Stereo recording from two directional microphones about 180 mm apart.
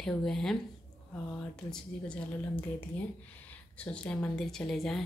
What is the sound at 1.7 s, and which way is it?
A woman's voice, 5° left (ahead or behind).